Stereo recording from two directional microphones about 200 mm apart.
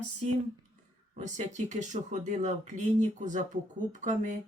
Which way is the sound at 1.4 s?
35° right (ahead or behind).